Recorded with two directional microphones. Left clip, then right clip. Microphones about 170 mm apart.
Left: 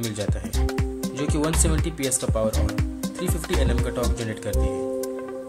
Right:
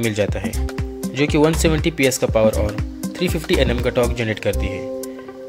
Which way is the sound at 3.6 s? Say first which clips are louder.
Right 9 dB; 25° right (ahead or behind).